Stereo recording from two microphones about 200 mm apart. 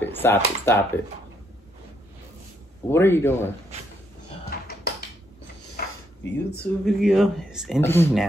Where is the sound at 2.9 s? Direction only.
10° left (ahead or behind).